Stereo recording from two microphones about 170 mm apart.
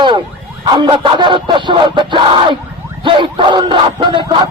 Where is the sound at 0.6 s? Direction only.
30° right (ahead or behind).